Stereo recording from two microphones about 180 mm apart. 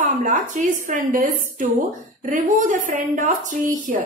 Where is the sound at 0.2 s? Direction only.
45° right (ahead or behind).